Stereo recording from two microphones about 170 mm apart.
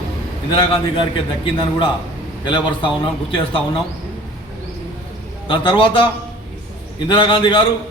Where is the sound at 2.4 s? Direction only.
30° left (ahead or behind).